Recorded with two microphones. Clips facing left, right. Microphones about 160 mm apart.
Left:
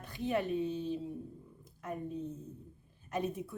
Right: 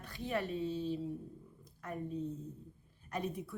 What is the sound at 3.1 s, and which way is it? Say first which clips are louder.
Speech: left 3 dB; 20° left (ahead or behind).